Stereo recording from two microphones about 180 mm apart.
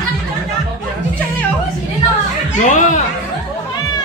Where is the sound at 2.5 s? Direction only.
45° left (ahead or behind).